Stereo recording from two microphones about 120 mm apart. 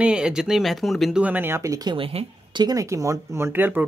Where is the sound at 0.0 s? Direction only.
5° right (ahead or behind).